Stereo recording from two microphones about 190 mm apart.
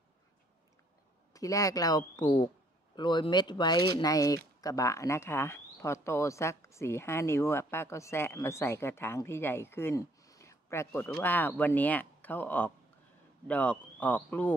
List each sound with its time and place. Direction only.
1.3 s speech: 15° left (ahead or behind)